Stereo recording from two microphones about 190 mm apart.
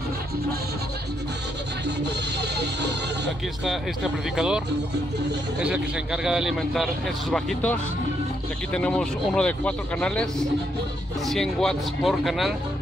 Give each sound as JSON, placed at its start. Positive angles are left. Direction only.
{"t": 1.9, "sound": "music", "side_deg": -60}
{"t": 3.6, "sound": "a man's voice", "side_deg": 0}
{"t": 8.7, "sound": "a man's voice", "side_deg": 5}
{"t": 11.2, "sound": "a man's voice", "side_deg": 0}